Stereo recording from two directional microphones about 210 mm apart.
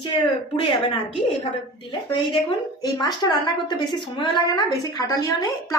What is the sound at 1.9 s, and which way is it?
A woman's voice, 20° left (ahead or behind).